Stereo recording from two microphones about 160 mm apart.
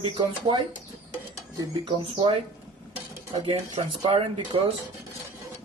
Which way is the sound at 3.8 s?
35° right (ahead or behind).